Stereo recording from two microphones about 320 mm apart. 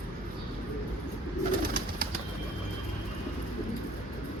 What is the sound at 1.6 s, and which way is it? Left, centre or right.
Bird, right.